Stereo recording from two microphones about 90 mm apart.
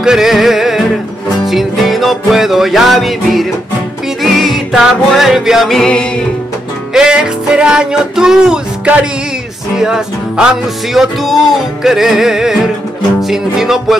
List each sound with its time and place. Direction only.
0.0 s music: 5° right (ahead or behind)
6.9 s music: 10° right (ahead or behind)